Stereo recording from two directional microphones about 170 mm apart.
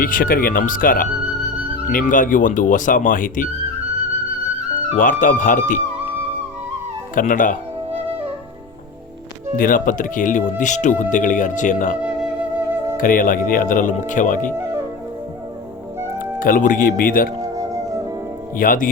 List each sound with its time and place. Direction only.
0.0 s speech: 55° left (ahead or behind)
4.9 s speech: 50° left (ahead or behind)
7.2 s speech: 50° left (ahead or behind)
9.6 s speech: 50° left (ahead or behind)
11.9 s music: 5° right (ahead or behind)
13.0 s speech: 55° left (ahead or behind)
16.1 s speech: 55° left (ahead or behind)
17.4 s music: 20° right (ahead or behind)
18.5 s speech: 55° left (ahead or behind)